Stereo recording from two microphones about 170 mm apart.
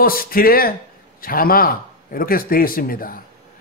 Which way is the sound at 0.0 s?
60° left (ahead or behind).